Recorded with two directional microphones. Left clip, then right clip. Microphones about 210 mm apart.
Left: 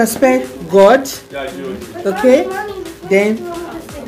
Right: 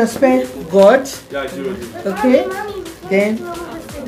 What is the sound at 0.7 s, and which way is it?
Speech, 35° left (ahead or behind).